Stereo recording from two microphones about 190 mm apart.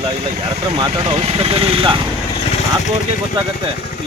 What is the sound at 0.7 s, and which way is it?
Speech, 25° right (ahead or behind).